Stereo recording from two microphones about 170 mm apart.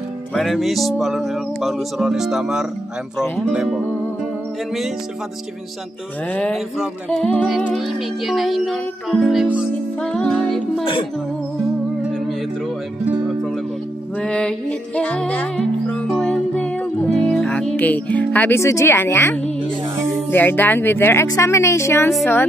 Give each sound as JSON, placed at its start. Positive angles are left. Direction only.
{"t": 0.3, "sound": "music", "side_deg": 0}
{"t": 6.3, "sound": "music", "side_deg": 5}
{"t": 10.8, "sound": "speech", "side_deg": 30}
{"t": 14.2, "sound": "speech", "side_deg": 5}
{"t": 16.1, "sound": "music", "side_deg": 5}
{"t": 20.2, "sound": "speech", "side_deg": 10}